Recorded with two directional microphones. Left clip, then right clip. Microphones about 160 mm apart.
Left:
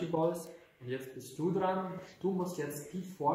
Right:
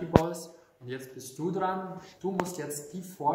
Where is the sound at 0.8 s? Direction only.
15° right (ahead or behind).